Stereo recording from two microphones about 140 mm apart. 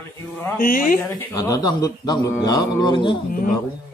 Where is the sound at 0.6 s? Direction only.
80° left.